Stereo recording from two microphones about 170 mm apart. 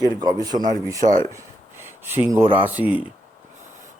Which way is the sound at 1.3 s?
15° right (ahead or behind).